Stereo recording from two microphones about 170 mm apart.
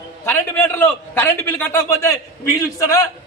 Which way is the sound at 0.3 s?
15° left (ahead or behind).